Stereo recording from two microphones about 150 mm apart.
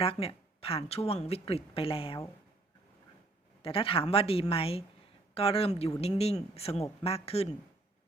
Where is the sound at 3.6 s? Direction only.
40° left (ahead or behind).